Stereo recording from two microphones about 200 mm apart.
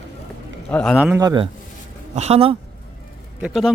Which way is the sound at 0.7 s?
5° left (ahead or behind).